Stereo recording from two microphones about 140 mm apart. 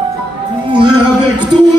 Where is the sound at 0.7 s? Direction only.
35° right (ahead or behind).